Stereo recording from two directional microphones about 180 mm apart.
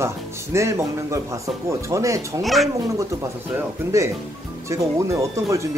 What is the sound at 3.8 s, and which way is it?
Speech, 10° right (ahead or behind).